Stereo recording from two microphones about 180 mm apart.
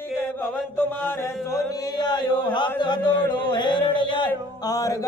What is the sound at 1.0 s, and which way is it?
Chant, 15° left (ahead or behind).